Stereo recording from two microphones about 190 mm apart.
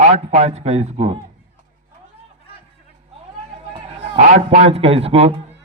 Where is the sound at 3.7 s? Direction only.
30° right (ahead or behind).